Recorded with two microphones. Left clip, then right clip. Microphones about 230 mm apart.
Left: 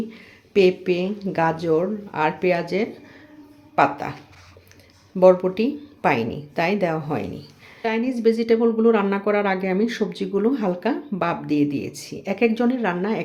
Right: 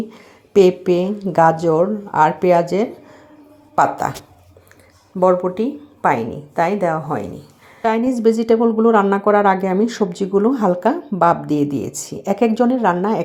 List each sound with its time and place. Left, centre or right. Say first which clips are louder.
0.1 s a woman's voice: right 10 dB; right
5.2 s speech: even; centre
7.8 s a woman's voice: right 6 dB; right